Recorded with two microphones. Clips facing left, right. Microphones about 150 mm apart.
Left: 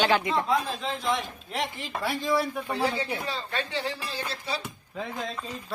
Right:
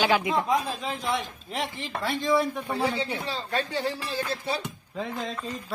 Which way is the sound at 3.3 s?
35° right (ahead or behind).